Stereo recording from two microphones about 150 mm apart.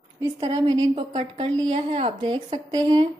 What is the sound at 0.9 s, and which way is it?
A woman's voice, 35° right (ahead or behind).